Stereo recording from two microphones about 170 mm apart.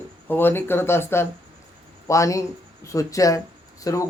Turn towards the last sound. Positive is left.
turn(degrees=20)  # may be behind; listen again after turning